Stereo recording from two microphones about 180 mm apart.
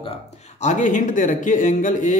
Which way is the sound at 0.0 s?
35° left (ahead or behind).